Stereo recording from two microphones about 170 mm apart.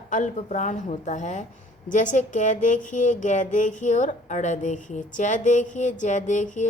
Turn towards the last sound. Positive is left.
turn(degrees=45)  # may be behind; listen again after turning